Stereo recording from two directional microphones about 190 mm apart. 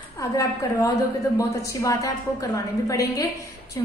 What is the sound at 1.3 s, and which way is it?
A woman's voice, 15° left (ahead or behind).